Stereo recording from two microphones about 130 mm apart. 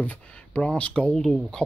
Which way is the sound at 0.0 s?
10° left (ahead or behind).